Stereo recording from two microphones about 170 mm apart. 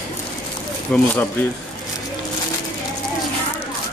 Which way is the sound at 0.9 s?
5° left (ahead or behind).